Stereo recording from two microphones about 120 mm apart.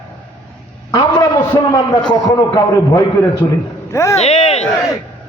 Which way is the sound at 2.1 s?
35° left (ahead or behind).